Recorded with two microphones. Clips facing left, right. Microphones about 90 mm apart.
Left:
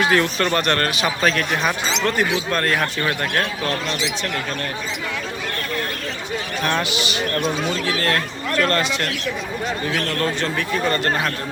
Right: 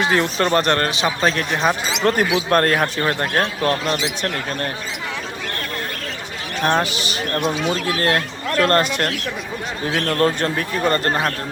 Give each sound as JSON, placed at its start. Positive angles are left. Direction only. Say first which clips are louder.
{"t": 0.0, "sound": "speech", "louder": "even", "side_deg": -25}
{"t": 6.7, "sound": "speech", "louder": "right 4 dB", "side_deg": -35}